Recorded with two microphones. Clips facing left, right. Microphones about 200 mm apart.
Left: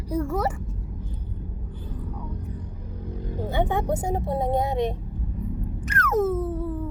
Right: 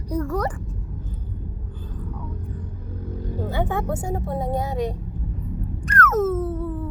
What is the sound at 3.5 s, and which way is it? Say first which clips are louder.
Speech: left 2 dB; 20° left (ahead or behind).